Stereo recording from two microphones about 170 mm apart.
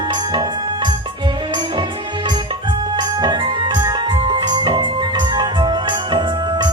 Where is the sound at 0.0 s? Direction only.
25° right (ahead or behind).